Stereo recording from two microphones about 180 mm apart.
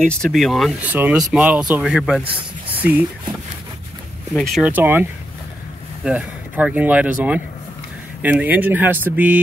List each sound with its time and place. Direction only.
0.0 s speech: 5° left (ahead or behind)
2.2 s a sound: 30° right (ahead or behind)
4.3 s speech: 5° left (ahead or behind)
4.6 s speech: 10° right (ahead or behind)
6.0 s speech: 5° right (ahead or behind)